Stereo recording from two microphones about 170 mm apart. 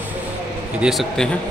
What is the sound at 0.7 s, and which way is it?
Speech, centre (ahead or behind).